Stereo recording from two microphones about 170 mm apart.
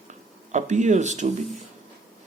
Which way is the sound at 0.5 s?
45° right (ahead or behind).